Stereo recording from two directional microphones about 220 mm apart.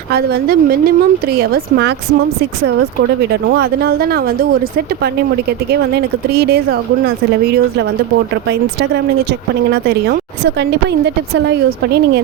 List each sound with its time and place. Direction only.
0.1 s a woman's voice: 45° right (ahead or behind)
3.6 s a woman's voice: 45° right (ahead or behind)
6.0 s a woman's voice: 45° right (ahead or behind)
9.8 s a woman's voice: 50° right (ahead or behind)